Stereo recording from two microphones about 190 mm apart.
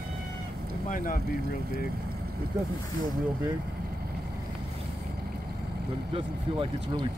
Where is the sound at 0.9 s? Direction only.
45° left (ahead or behind).